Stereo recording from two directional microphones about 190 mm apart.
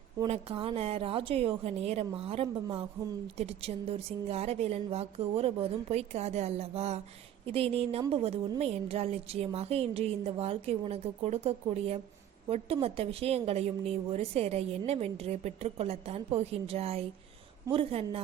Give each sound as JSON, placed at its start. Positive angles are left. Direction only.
{"t": 0.2, "sound": "a woman's voice", "side_deg": -30}